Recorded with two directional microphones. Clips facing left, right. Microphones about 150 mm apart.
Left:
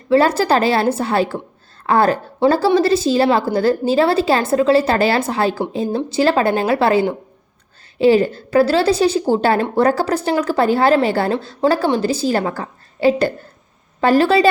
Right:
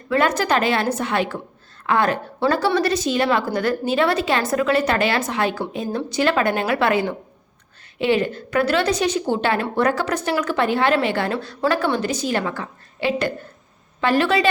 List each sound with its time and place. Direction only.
0.1 s a woman's voice: 30° left (ahead or behind)